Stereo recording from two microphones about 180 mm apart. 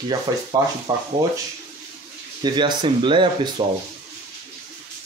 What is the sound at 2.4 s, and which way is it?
Speech, 25° right (ahead or behind).